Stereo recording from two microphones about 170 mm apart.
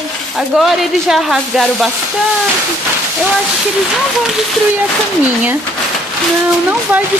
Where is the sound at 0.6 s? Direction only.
Centre (ahead or behind).